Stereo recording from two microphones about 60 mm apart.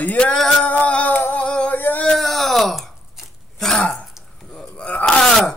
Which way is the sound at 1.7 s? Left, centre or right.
Left.